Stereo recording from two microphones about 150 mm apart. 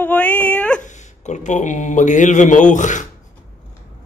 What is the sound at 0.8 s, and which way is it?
A man's voice, 50° left (ahead or behind).